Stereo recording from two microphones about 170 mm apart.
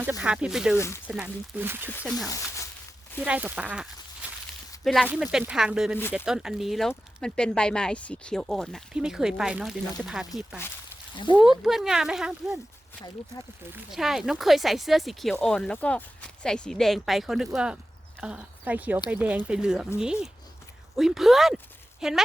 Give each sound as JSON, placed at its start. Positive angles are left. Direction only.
{"t": 0.0, "sound": "speech", "side_deg": -10}
{"t": 0.8, "sound": "speech", "side_deg": 15}
{"t": 1.0, "sound": "speech", "side_deg": -10}
{"t": 2.0, "sound": "speech", "side_deg": 0}
{"t": 4.8, "sound": "speech", "side_deg": 0}
{"t": 11.5, "sound": "speech", "side_deg": 0}
{"t": 13.7, "sound": "speech", "side_deg": 0}